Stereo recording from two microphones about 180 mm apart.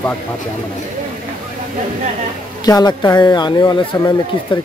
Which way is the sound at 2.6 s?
20° left (ahead or behind).